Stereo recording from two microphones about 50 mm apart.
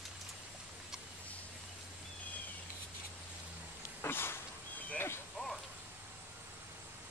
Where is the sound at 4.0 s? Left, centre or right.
Left.